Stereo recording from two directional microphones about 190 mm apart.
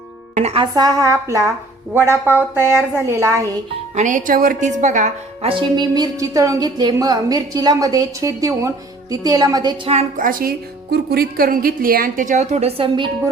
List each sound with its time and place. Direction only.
0.3 s music: 30° right (ahead or behind)
0.7 s a woman's voice: 20° right (ahead or behind)
3.9 s a woman's voice: 40° right (ahead or behind); by 9.9 s 20° right (ahead or behind)
9.9 s a woman's voice: 40° right (ahead or behind)